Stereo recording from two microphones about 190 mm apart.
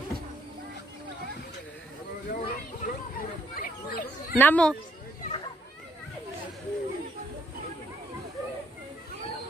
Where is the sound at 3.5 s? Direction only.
50° left (ahead or behind).